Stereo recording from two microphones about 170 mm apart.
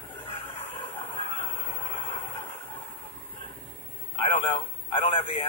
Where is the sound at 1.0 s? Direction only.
30° left (ahead or behind).